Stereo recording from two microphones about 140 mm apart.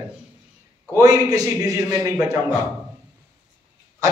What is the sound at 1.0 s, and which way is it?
A man's voice, 25° right (ahead or behind).